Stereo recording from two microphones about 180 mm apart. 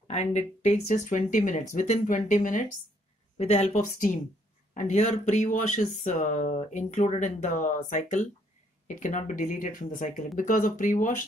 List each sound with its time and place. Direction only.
0.1 s speech: 40° left (ahead or behind)